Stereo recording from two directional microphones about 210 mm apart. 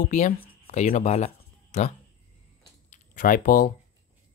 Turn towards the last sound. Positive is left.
turn(degrees=40)  # may be behind; listen again after turning